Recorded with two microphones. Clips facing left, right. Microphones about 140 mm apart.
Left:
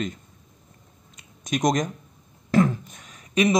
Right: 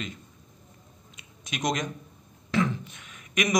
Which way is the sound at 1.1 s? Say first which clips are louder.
Left 10 dB; 45° left (ahead or behind).